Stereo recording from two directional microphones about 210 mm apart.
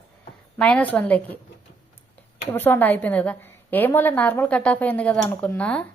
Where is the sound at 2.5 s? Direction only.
10° left (ahead or behind).